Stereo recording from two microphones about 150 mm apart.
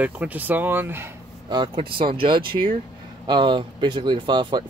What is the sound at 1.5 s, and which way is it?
Speech, 30° right (ahead or behind).